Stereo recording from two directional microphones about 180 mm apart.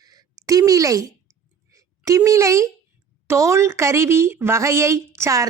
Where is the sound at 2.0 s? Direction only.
15° right (ahead or behind).